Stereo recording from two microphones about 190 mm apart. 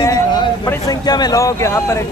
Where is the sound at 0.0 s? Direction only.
20° left (ahead or behind).